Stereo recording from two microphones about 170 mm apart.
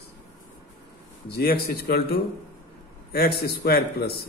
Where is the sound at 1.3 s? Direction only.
70° left (ahead or behind).